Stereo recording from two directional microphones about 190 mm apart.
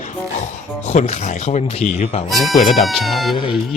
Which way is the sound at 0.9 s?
35° left (ahead or behind).